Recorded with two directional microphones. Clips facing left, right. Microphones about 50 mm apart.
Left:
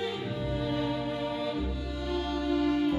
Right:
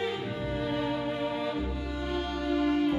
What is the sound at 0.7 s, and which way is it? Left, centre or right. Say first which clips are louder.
Music: right 1 dB; right.